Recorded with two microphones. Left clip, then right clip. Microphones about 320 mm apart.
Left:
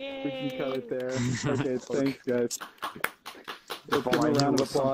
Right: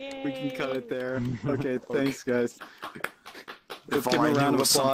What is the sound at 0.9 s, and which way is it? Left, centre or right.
Speech, right.